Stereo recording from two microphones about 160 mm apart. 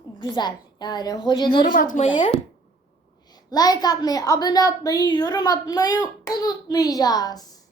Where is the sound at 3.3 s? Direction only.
25° left (ahead or behind).